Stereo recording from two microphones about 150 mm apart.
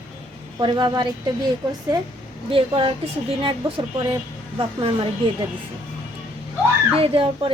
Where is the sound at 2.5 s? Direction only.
35° right (ahead or behind).